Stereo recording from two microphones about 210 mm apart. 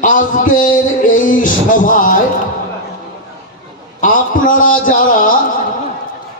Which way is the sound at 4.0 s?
40° left (ahead or behind).